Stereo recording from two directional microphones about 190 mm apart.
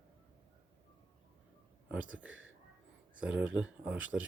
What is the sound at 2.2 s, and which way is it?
Speech, 90° right.